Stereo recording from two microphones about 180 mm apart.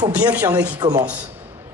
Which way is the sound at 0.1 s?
5° right (ahead or behind).